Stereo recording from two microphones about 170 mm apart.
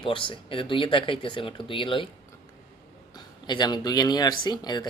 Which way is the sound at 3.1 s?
25° left (ahead or behind).